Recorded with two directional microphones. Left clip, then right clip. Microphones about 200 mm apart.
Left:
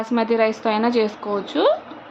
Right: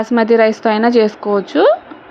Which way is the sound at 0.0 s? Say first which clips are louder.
Right 8 dB; 30° right (ahead or behind).